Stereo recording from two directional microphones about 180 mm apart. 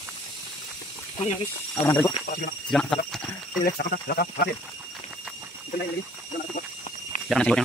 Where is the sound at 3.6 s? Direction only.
60° left (ahead or behind).